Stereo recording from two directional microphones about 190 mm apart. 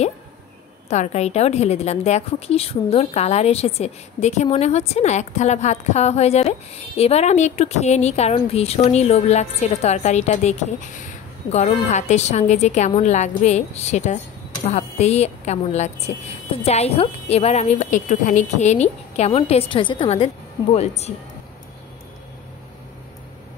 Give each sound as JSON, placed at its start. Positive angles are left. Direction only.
{"t": 0.8, "sound": "a woman's voice", "side_deg": 35}